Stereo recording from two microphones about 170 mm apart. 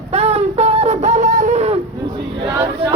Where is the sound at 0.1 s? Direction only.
35° right (ahead or behind).